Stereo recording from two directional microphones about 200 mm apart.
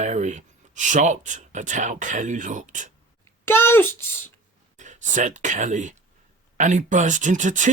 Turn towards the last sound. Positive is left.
turn(degrees=-40)  # may be behind; listen again after turning